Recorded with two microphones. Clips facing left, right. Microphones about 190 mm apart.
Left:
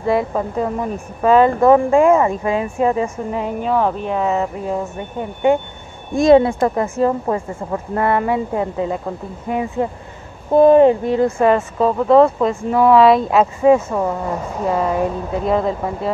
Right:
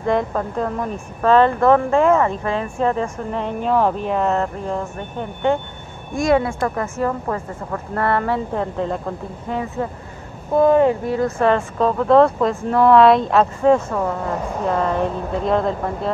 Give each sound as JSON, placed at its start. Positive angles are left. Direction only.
{"t": 0.0, "sound": "speech", "side_deg": 5}
{"t": 6.1, "sound": "speech", "side_deg": 20}
{"t": 11.3, "sound": "speech", "side_deg": 10}